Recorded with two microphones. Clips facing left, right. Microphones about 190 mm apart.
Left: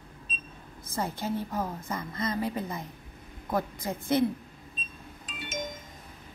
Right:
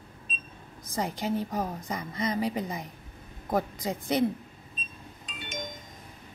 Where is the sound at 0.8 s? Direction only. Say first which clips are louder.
Right 1 dB; 15° right (ahead or behind).